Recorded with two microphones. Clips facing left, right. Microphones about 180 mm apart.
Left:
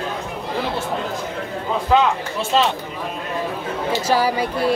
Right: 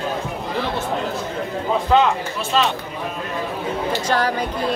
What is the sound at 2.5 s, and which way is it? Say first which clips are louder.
Speech: left 1 dB; 25° left (ahead or behind).